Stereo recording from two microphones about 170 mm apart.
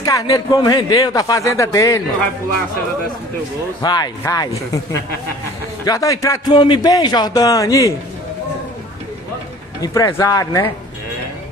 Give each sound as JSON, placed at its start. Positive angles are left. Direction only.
{"t": 0.0, "sound": "a man's voice", "side_deg": 20}
{"t": 3.8, "sound": "a man's voice", "side_deg": 25}
{"t": 5.9, "sound": "a man's voice", "side_deg": 20}
{"t": 9.8, "sound": "a man's voice", "side_deg": 20}